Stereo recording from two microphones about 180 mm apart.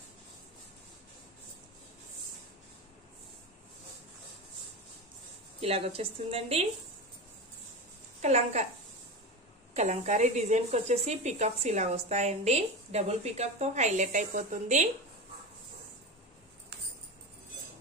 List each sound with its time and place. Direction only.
5.6 s speech: 35° right (ahead or behind)
8.2 s a woman's voice: 40° right (ahead or behind)
9.8 s speech: 40° right (ahead or behind)